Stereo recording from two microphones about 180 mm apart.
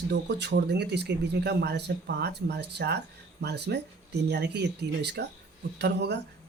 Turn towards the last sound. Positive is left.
turn(degrees=-70)  # may be behind; listen again after turning